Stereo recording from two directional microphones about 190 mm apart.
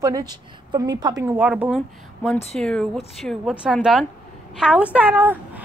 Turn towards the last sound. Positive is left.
turn(degrees=-10)  # may be behind; listen again after turning